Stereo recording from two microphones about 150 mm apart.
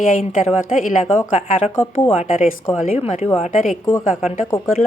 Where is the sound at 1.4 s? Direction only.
45° left (ahead or behind).